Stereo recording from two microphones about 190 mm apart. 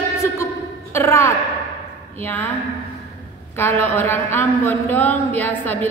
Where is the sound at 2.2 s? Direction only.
10° left (ahead or behind).